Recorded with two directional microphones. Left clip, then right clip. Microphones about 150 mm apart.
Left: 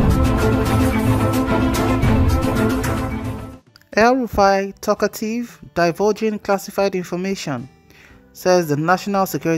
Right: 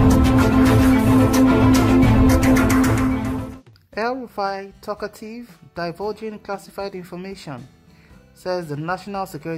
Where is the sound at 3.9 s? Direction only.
40° left (ahead or behind).